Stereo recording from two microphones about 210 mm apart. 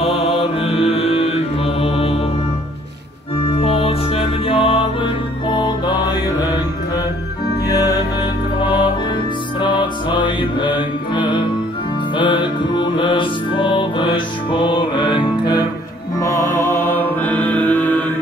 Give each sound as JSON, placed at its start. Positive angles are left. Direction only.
{"t": 0.0, "sound": "music", "side_deg": 30}
{"t": 3.5, "sound": "music", "side_deg": 30}
{"t": 7.6, "sound": "music", "side_deg": 15}
{"t": 9.6, "sound": "music", "side_deg": 20}